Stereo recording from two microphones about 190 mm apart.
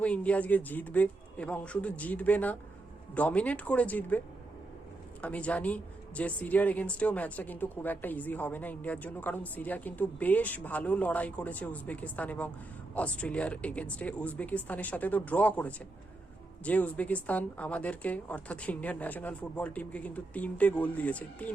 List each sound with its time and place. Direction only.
0.0 s speech: 5° left (ahead or behind)
5.2 s speech: 5° left (ahead or behind)